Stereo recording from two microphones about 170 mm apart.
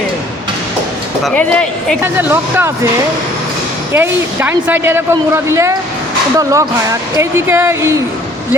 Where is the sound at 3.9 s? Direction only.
15° right (ahead or behind).